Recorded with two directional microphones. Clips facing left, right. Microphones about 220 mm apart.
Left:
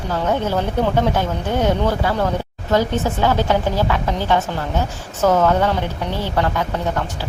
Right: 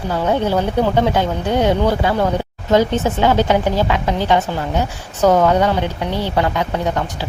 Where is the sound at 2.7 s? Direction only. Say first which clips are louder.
Right 3 dB; 20° right (ahead or behind).